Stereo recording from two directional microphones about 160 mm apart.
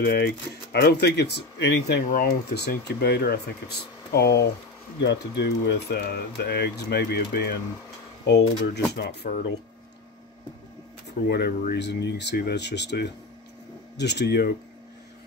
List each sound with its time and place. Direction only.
0.0 s speech: 90° left
4.1 s speech: 90° left
11.1 s speech: 90° left